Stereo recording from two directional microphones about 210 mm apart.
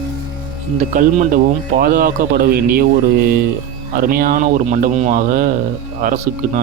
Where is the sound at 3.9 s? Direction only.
45° right (ahead or behind).